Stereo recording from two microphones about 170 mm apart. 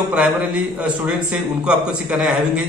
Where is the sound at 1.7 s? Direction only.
5° right (ahead or behind).